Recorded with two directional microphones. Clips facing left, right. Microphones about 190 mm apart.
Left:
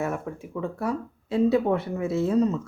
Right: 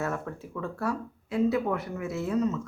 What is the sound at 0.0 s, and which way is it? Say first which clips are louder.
Speech: left 3 dB; 15° left (ahead or behind).